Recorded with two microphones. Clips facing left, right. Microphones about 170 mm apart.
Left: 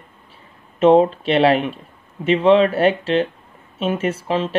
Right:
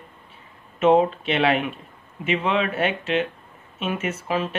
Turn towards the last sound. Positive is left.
turn(degrees=30)  # may be behind; listen again after turning